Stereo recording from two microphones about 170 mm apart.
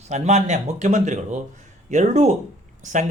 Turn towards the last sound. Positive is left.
turn(degrees=-45)  # may be behind; listen again after turning